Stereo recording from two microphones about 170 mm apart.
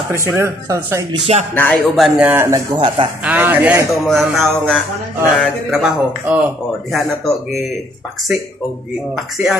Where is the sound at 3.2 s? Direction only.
10° right (ahead or behind).